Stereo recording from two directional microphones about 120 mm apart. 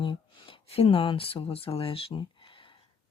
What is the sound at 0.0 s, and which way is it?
Speech, 45° left (ahead or behind).